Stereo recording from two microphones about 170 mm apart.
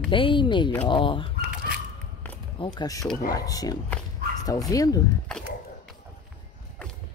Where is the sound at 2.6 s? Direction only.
25° left (ahead or behind).